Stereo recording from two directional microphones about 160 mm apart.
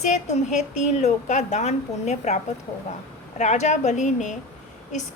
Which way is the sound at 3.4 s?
45° left (ahead or behind).